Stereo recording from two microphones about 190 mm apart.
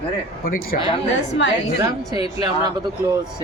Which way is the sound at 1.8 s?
20° right (ahead or behind).